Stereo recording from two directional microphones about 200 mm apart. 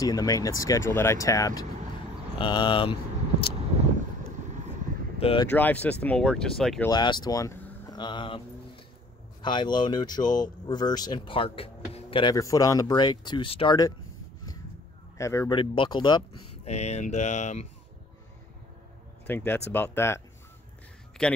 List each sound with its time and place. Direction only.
0.0 s speech: 20° left (ahead or behind)
5.2 s speech: 25° left (ahead or behind)
5.5 s speech: 10° left (ahead or behind)
6.9 s speech: 20° left (ahead or behind)
9.4 s speech: 25° left (ahead or behind)
15.1 s speech: 15° left (ahead or behind)
16.6 s speech: 35° left (ahead or behind)
19.2 s speech: 10° left (ahead or behind)
21.2 s a man's voice: 5° left (ahead or behind)